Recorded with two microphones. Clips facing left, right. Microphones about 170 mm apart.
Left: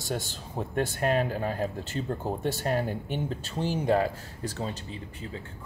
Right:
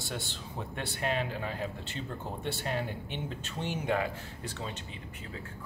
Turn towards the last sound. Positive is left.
turn(degrees=40)  # may be behind; listen again after turning